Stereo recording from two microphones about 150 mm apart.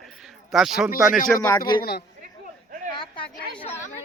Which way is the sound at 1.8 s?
90° left.